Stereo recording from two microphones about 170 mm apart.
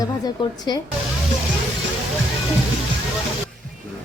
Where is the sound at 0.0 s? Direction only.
25° left (ahead or behind).